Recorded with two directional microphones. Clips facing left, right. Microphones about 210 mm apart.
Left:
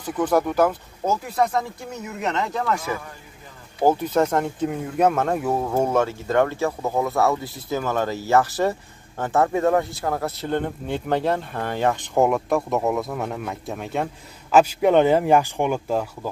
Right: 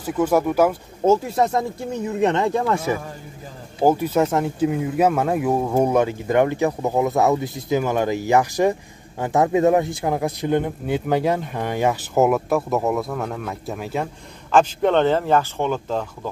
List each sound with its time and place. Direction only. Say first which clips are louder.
0.0 s speech: right 2 dB; 10° right (ahead or behind)
1.0 s speech: right 5 dB; 25° right (ahead or behind)
3.8 s speech: right 1 dB; 10° right (ahead or behind); by 16.1 s 10° left (ahead or behind)